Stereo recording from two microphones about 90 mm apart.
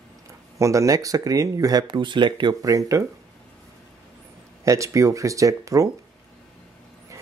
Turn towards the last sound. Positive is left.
turn(degrees=-35)  # may be behind; listen again after turning